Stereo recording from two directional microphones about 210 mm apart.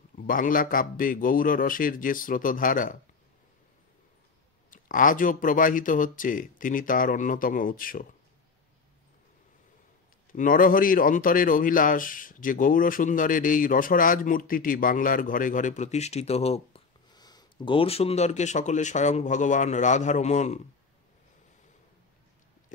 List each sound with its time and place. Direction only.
0.3 s speech: 40° left (ahead or behind)
4.6 s speech: 40° left (ahead or behind)
10.3 s speech: 40° left (ahead or behind)